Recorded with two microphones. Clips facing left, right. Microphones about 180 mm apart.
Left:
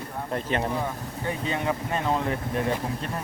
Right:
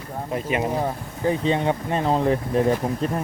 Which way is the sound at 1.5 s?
30° right (ahead or behind).